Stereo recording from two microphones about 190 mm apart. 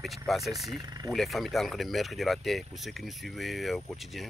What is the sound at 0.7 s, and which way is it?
Speech, 20° right (ahead or behind).